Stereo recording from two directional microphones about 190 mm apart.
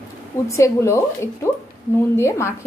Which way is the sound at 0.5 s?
15° left (ahead or behind).